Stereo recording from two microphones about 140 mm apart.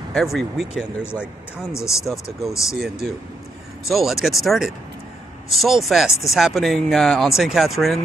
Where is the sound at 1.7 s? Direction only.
20° left (ahead or behind).